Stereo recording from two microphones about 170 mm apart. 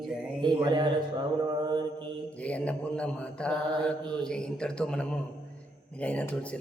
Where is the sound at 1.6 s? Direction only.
25° right (ahead or behind).